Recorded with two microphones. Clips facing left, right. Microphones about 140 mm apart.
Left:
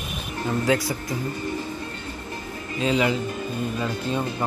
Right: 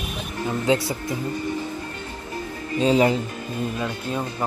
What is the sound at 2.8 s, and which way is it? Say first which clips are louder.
Speech: right 4 dB; 35° right (ahead or behind).